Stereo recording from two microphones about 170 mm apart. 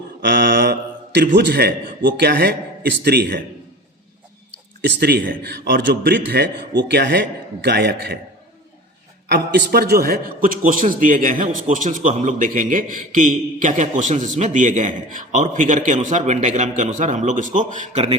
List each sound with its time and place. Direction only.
0.2 s mantra: 90° right
2.1 s speech: 75° right (ahead or behind)
4.8 s speech: 65° right (ahead or behind)
5.4 s a man's voice: 90° right; by 8.2 s 75° right (ahead or behind)
9.3 s a man's voice: 80° right; by 18.0 s 50° right (ahead or behind)